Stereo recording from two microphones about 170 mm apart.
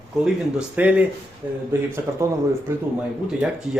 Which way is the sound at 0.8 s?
10° right (ahead or behind).